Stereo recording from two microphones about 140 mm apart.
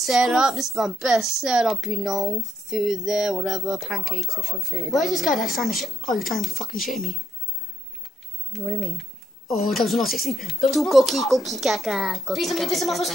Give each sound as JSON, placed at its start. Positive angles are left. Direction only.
{"t": 0.0, "sound": "a woman's voice", "side_deg": -5}
{"t": 4.4, "sound": "speech", "side_deg": -20}
{"t": 4.9, "sound": "a woman's voice", "side_deg": 0}
{"t": 8.5, "sound": "a woman's voice", "side_deg": 0}